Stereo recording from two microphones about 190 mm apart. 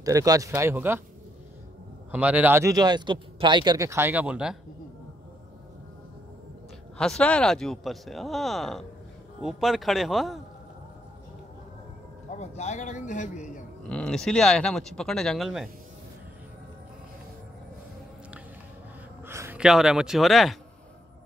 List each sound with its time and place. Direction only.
0.0 s speech: 20° right (ahead or behind)
2.0 s speech: 10° right (ahead or behind)
7.0 s speech: 5° left (ahead or behind)
12.4 s speech: 35° left (ahead or behind)
13.8 s speech: 5° left (ahead or behind)
19.2 s speech: 15° right (ahead or behind)